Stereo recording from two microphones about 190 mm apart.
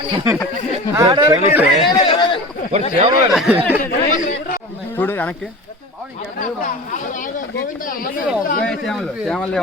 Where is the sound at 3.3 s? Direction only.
5° right (ahead or behind).